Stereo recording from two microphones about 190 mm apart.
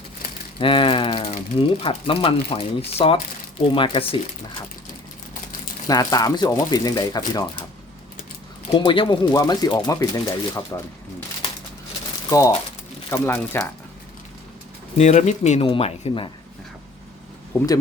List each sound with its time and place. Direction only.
0.6 s speech: 25° left (ahead or behind)
1.3 s speech: 45° left (ahead or behind)
1.8 s speech: 30° left (ahead or behind)
5.9 s speech: 20° left (ahead or behind)
8.7 s speech: 25° left (ahead or behind)
12.3 s speech: 20° left (ahead or behind)
14.9 s speech: 35° left (ahead or behind)
17.5 s speech: 15° left (ahead or behind)